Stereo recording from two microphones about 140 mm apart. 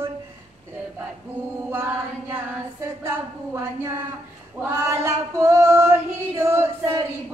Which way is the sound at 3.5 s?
20° right (ahead or behind).